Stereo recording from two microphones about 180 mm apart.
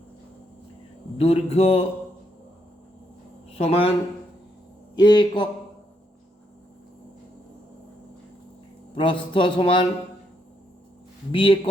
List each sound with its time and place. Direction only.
1.2 s a man's voice: 35° left (ahead or behind)
3.5 s speech: 35° left (ahead or behind)
4.9 s speech: 25° left (ahead or behind)
9.0 s speech: 25° left (ahead or behind)
11.3 s speech: 30° left (ahead or behind)